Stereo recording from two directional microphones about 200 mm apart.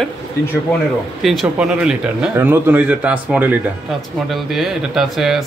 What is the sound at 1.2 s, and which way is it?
Speech, centre (ahead or behind).